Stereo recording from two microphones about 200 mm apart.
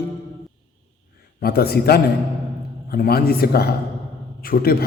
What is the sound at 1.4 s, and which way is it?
A man's voice, 50° left (ahead or behind).